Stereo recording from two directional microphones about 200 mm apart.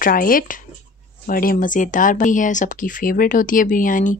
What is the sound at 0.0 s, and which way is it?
Speech, 45° left (ahead or behind).